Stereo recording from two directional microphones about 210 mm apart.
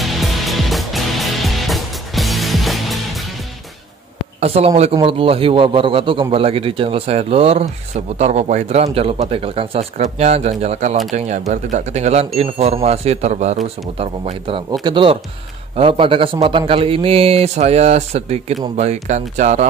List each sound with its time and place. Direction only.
0.0 s music: centre (ahead or behind)
4.4 s a man's voice: 30° right (ahead or behind)